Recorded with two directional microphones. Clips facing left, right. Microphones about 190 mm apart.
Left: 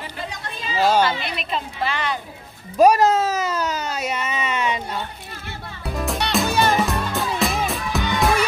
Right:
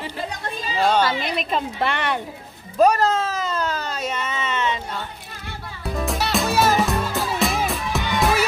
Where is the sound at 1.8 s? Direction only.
60° right (ahead or behind).